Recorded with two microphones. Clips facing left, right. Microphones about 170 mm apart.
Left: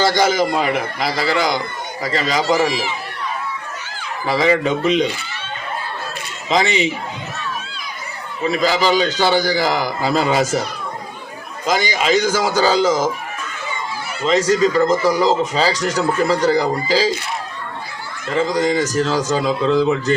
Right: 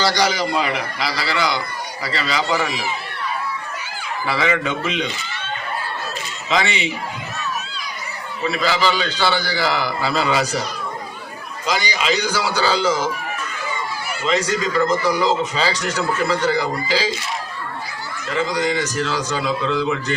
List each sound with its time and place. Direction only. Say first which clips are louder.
0.0 s speech: left 4 dB; 50° left (ahead or behind)
4.3 s speech: left 5 dB; 35° left (ahead or behind)
6.5 s speech: left 4 dB; 40° left (ahead or behind)
8.4 s speech: left 3 dB; 45° left (ahead or behind)
11.6 s speech: left 4 dB; 50° left (ahead or behind)
14.3 s speech: left 6 dB; 40° left (ahead or behind)
18.3 s speech: left 4 dB; 40° left (ahead or behind)